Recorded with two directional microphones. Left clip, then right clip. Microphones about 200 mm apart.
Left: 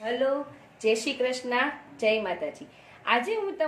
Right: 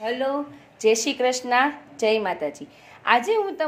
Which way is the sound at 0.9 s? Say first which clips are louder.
Right 5 dB; 45° right (ahead or behind).